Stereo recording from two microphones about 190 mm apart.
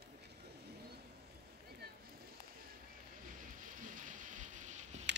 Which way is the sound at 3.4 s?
45° right (ahead or behind).